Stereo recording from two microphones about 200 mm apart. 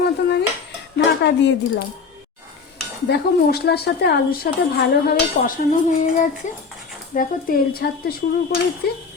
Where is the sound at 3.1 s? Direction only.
50° left (ahead or behind).